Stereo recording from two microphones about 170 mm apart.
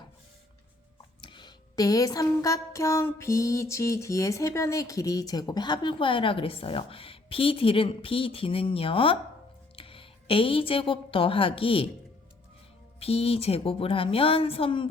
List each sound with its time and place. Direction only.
1.2 s a sound: 25° left (ahead or behind)
9.7 s speech: 30° left (ahead or behind)
13.0 s a woman's voice: 35° left (ahead or behind)